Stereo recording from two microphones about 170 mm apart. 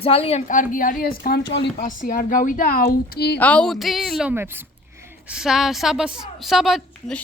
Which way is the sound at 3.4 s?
5° left (ahead or behind).